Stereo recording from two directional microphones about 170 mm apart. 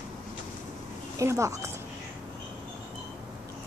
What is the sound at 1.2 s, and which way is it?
Speech, 20° right (ahead or behind).